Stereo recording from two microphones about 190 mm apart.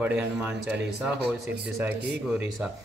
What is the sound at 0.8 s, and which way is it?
Speech, 60° right (ahead or behind).